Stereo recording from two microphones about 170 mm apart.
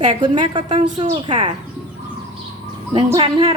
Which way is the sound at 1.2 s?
30° right (ahead or behind).